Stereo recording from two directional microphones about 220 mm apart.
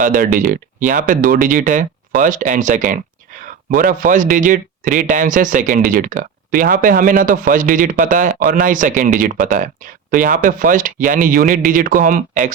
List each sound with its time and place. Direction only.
0.0 s speech: 40° right (ahead or behind)